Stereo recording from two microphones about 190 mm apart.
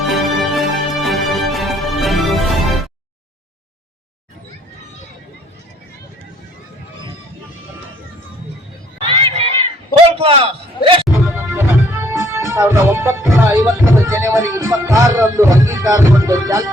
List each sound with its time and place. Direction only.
0.0 s music: centre (ahead or behind)
9.0 s run: 30° right (ahead or behind)
10.2 s a sound: 30° right (ahead or behind)
10.8 s music: 55° left (ahead or behind)
11.3 s music: 15° right (ahead or behind)